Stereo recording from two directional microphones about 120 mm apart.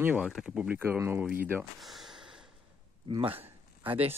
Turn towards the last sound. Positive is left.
turn(degrees=-55)  # may be behind; listen again after turning